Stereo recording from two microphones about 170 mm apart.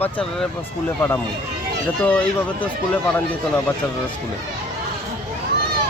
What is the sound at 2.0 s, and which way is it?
Speech, 10° left (ahead or behind).